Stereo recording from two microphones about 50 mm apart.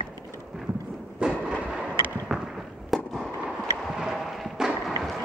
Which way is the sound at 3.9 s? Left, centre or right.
Centre.